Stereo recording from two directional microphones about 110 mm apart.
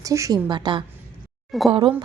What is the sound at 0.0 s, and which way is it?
Speech, 30° right (ahead or behind).